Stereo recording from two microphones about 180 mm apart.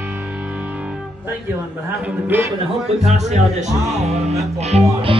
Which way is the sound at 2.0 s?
10° right (ahead or behind).